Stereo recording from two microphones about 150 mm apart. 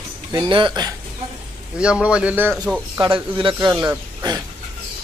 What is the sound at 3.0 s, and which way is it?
A man's voice, 35° right (ahead or behind).